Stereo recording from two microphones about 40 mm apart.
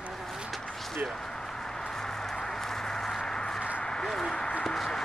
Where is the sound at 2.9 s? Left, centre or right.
Centre.